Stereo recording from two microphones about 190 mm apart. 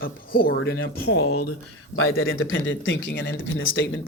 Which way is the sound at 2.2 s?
90° left.